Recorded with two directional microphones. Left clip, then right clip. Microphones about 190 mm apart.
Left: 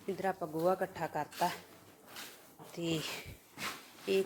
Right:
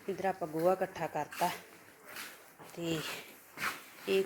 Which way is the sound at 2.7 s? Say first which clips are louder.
Even; 15° left (ahead or behind).